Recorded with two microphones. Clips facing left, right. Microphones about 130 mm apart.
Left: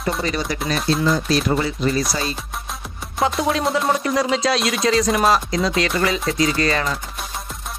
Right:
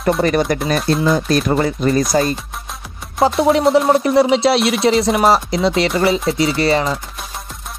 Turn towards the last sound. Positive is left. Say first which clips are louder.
# right 4 dB
turn(degrees=-30)  # may be behind; listen again after turning